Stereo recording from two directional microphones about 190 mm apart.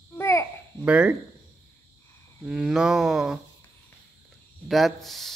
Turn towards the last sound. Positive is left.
turn(degrees=0)  # may be behind; listen again after turning